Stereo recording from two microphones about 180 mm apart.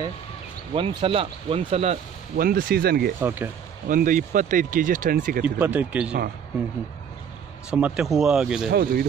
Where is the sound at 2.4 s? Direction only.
55° right (ahead or behind).